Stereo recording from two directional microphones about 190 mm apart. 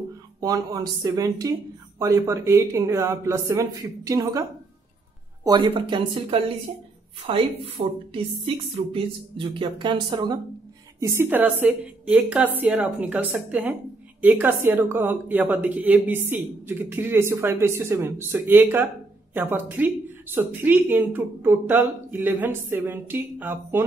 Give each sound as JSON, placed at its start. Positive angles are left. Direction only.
{"t": 0.4, "sound": "a woman's voice", "side_deg": -20}